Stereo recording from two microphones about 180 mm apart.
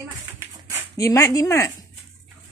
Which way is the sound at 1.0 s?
20° left (ahead or behind).